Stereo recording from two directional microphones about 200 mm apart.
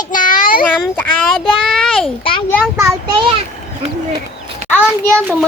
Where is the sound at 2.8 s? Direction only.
15° right (ahead or behind).